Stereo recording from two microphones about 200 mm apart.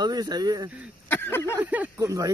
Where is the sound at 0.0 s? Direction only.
20° right (ahead or behind).